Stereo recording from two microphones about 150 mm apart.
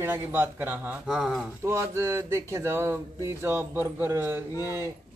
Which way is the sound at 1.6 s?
20° right (ahead or behind).